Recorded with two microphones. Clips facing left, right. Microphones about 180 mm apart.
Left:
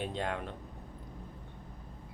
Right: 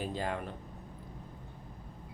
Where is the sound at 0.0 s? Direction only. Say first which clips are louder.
Even; centre (ahead or behind).